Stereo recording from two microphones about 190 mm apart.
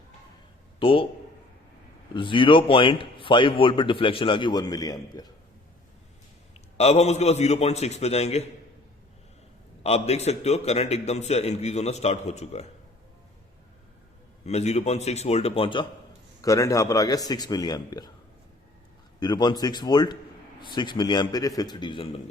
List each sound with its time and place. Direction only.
0.8 s speech: 30° left (ahead or behind)
2.1 s a man's voice: 25° left (ahead or behind)
6.7 s a man's voice: 35° left (ahead or behind)
9.8 s a man's voice: 35° left (ahead or behind)
14.4 s a man's voice: 35° left (ahead or behind)
16.4 s a man's voice: 15° left (ahead or behind)
19.2 s a man's voice: 20° left (ahead or behind)